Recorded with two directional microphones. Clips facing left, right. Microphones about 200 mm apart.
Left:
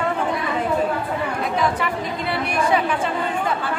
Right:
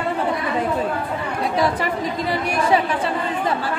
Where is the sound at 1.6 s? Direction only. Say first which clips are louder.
Right 3 dB; 40° right (ahead or behind).